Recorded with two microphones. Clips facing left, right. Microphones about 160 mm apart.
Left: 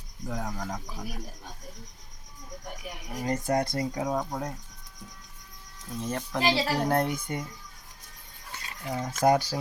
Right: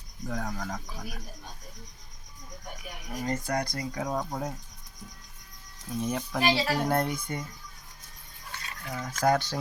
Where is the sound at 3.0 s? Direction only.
20° left (ahead or behind).